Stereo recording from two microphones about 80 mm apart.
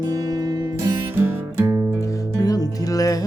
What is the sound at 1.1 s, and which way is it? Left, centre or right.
Music, right.